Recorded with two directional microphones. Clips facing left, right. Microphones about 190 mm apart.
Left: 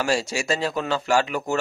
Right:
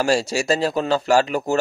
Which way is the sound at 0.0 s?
35° right (ahead or behind).